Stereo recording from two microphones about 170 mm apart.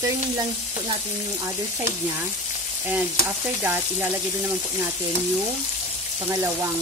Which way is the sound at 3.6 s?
10° right (ahead or behind).